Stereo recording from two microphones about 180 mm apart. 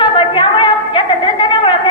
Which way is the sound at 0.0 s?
30° left (ahead or behind).